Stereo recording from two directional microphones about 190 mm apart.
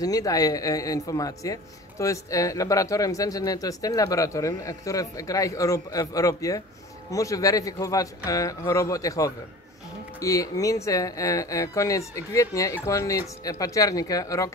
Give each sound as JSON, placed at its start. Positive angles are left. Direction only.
{"t": 0.0, "sound": "speech", "side_deg": 20}